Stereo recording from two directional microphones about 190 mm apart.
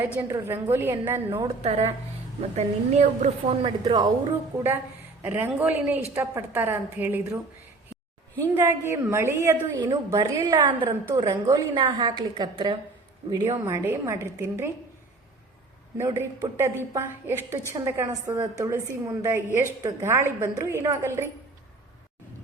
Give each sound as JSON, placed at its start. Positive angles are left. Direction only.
{"t": 0.2, "sound": "a woman's voice", "side_deg": -10}
{"t": 1.3, "sound": "a woman's voice", "side_deg": -30}
{"t": 5.2, "sound": "a woman's voice", "side_deg": -10}
{"t": 8.4, "sound": "a woman's voice", "side_deg": -10}
{"t": 16.0, "sound": "a woman's voice", "side_deg": -15}